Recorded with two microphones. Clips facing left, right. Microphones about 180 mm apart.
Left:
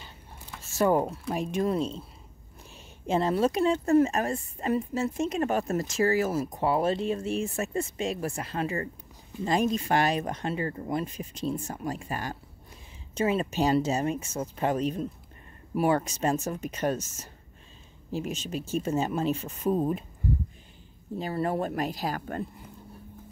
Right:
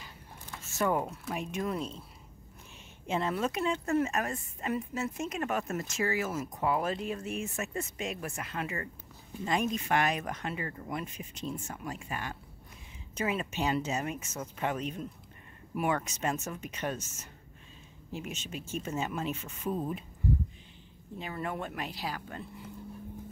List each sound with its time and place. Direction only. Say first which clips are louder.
0.7 s a woman's voice: left 6 dB; 35° left (ahead or behind)
3.1 s a woman's voice: left 6 dB; 35° left (ahead or behind)
21.2 s speech: left 8 dB; 35° left (ahead or behind)